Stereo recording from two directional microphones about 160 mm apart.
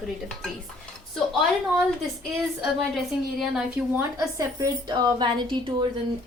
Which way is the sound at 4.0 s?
20° right (ahead or behind).